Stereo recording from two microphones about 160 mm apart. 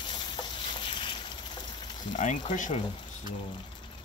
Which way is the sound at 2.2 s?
50° left (ahead or behind).